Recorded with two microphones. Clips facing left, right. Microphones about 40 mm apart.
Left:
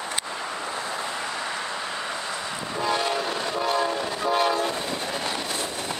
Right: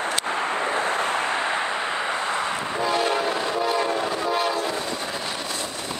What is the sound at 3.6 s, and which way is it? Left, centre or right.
Train, centre.